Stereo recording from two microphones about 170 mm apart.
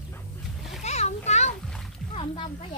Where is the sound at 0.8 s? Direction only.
40° left (ahead or behind).